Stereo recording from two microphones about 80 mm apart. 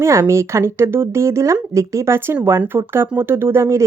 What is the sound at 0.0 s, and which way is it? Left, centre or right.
Speech, right.